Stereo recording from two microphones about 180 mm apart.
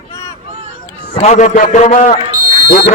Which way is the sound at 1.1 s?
40° left (ahead or behind).